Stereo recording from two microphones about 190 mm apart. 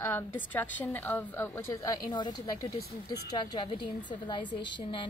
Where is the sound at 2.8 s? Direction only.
55° left (ahead or behind).